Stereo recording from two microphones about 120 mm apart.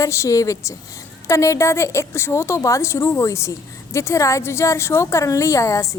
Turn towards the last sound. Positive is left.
turn(degrees=25)  # may be behind; listen again after turning